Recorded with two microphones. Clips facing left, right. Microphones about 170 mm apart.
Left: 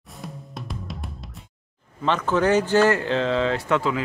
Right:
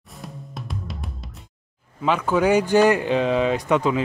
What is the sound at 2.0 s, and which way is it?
Speech, 10° right (ahead or behind).